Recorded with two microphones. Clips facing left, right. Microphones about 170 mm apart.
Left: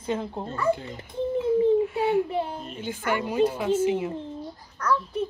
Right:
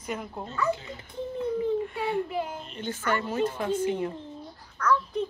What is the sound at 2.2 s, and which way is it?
Speech, 30° left (ahead or behind).